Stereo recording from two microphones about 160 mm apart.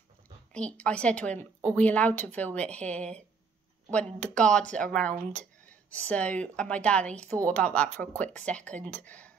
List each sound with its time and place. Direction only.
0.5 s a woman's voice: 5° left (ahead or behind)